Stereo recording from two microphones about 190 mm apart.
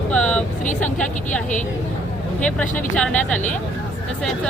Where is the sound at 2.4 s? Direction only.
5° left (ahead or behind).